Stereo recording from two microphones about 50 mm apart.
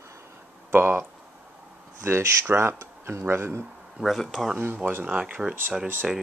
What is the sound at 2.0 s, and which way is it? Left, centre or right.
Speech, right.